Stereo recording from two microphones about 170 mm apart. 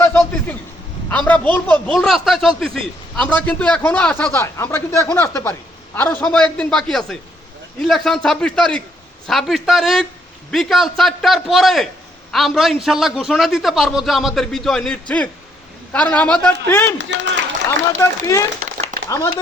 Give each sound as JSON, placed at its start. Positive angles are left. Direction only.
{"t": 0.0, "sound": "a sound", "side_deg": 15}
{"t": 1.1, "sound": "a man's voice", "side_deg": 10}
{"t": 17.0, "sound": "a man's voice", "side_deg": -90}
{"t": 17.7, "sound": "a man's voice", "side_deg": 15}
{"t": 18.6, "sound": "a sound", "side_deg": -60}
{"t": 19.0, "sound": "speech", "side_deg": 15}